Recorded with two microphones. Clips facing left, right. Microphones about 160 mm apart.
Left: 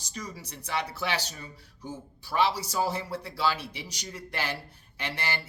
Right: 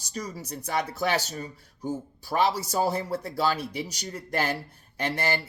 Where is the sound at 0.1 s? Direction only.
40° right (ahead or behind).